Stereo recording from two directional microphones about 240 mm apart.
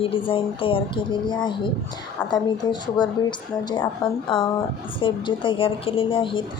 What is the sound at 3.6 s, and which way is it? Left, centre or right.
A woman's voice, centre.